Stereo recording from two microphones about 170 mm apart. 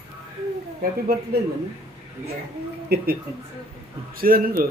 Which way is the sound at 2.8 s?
65° right (ahead or behind).